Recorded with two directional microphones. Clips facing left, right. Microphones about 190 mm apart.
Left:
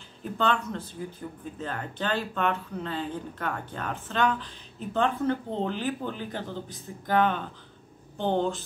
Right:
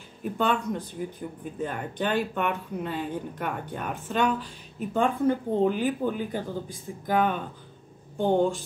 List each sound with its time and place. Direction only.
0.2 s speech: 15° right (ahead or behind)